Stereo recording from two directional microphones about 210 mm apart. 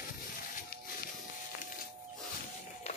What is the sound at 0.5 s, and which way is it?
Music, 45° left (ahead or behind).